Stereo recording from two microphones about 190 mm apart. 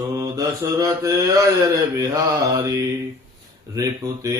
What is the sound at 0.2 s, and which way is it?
Mantra, 20° right (ahead or behind).